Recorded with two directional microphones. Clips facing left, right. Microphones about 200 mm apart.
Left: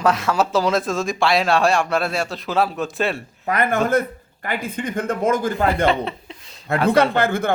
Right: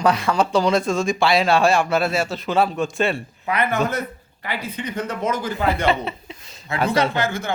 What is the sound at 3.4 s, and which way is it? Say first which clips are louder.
Speech: left 2 dB; 45° left (ahead or behind).